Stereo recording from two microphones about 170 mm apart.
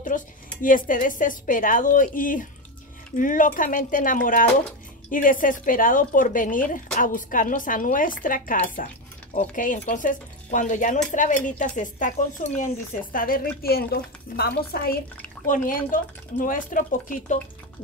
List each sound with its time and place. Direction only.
0.1 s a woman's voice: 50° left (ahead or behind)
15.4 s speech: 50° left (ahead or behind)